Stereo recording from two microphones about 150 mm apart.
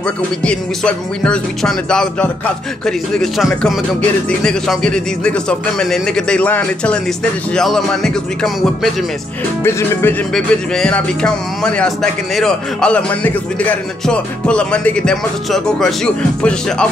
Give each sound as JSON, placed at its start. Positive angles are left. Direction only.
{"t": 0.4, "sound": "speech", "side_deg": 5}
{"t": 9.6, "sound": "speech", "side_deg": 15}
{"t": 10.3, "sound": "speech", "side_deg": 5}